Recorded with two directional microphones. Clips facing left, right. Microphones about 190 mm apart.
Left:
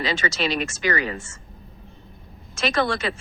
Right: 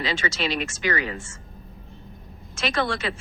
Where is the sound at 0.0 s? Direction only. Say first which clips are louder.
Left 2 dB; 40° left (ahead or behind).